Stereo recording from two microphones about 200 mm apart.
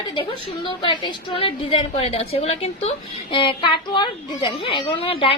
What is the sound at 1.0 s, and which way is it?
A woman's voice, 25° left (ahead or behind).